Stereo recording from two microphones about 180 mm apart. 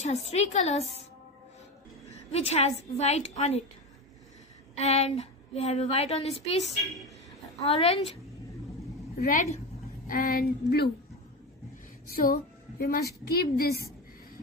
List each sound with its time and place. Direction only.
0.0 s a woman's voice: 40° left (ahead or behind)
2.0 s a woman's voice: 35° left (ahead or behind)
4.7 s a woman's voice: 35° left (ahead or behind)
7.6 s a woman's voice: 35° left (ahead or behind)
9.3 s a woman's voice: 45° left (ahead or behind)
10.0 s a woman's voice: 55° left (ahead or behind)
12.1 s a woman's voice: 55° left (ahead or behind)